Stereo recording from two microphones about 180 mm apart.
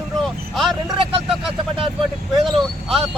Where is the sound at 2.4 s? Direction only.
Centre (ahead or behind).